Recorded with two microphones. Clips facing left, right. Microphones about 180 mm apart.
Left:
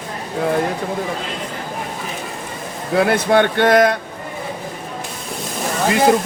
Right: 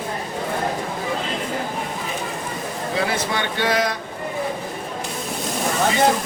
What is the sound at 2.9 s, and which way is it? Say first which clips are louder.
Speech: left 10 dB; 60° left (ahead or behind).